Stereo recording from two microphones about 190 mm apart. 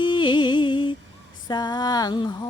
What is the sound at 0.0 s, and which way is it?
Music, 25° left (ahead or behind).